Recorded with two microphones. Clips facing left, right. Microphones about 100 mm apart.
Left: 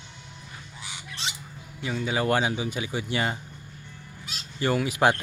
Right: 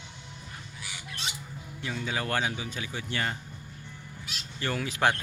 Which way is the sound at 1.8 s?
5° left (ahead or behind).